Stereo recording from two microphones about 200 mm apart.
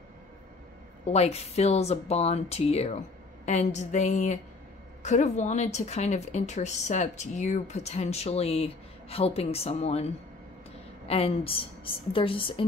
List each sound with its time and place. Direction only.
1.1 s a woman's voice: 30° left (ahead or behind)